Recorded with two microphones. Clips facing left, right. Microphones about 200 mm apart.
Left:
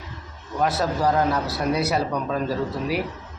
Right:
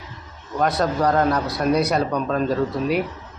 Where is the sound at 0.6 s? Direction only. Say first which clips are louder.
Right 2 dB; 5° left (ahead or behind).